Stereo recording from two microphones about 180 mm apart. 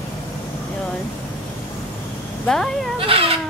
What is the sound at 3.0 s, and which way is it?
Cat, 30° right (ahead or behind).